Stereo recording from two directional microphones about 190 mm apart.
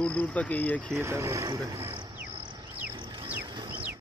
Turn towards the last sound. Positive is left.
turn(degrees=-25)  # may be behind; listen again after turning